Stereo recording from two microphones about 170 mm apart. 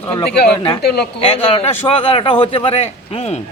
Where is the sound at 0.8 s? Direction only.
75° left (ahead or behind).